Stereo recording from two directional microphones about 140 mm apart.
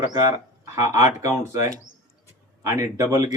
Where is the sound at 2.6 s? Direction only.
20° right (ahead or behind).